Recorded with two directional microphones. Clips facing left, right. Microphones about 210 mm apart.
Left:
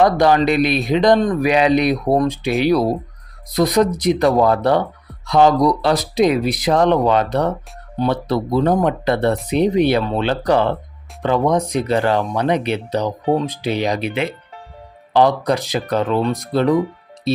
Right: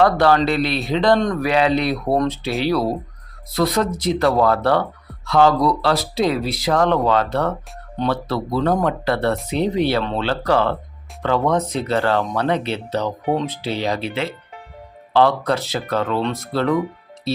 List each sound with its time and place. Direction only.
0.0 s speech: 15° left (ahead or behind)
1.2 s speech: 5° left (ahead or behind)
1.5 s speech: 15° left (ahead or behind)
17.3 s music: 20° left (ahead or behind)